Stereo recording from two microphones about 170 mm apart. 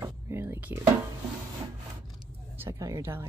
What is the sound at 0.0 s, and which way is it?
Music, 15° right (ahead or behind).